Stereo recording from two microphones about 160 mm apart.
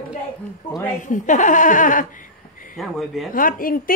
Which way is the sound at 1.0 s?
50° left (ahead or behind).